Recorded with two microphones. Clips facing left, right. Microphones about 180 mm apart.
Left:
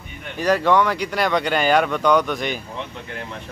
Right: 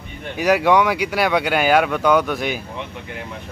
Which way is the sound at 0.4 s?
10° right (ahead or behind).